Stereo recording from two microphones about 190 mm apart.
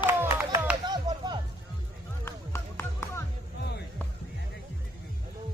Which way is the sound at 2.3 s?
15° left (ahead or behind).